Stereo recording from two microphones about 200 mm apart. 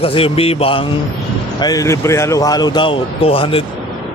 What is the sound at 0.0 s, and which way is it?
Speech, 30° left (ahead or behind).